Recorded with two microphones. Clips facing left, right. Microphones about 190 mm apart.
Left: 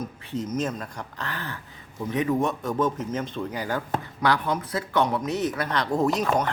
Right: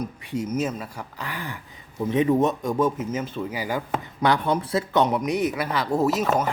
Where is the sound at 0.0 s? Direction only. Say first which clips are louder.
Right 2 dB; 10° right (ahead or behind).